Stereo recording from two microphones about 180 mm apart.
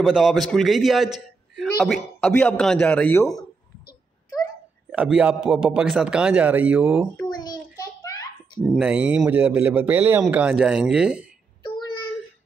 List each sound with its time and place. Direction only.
0.0 s a man's voice: centre (ahead or behind)
4.9 s speech: 5° right (ahead or behind)
7.2 s a sound: 20° left (ahead or behind)
8.7 s a man's voice: 5° right (ahead or behind)
11.6 s child singing: 25° left (ahead or behind)